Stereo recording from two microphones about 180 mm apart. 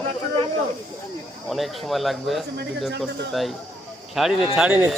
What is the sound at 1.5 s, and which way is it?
Speech, centre (ahead or behind).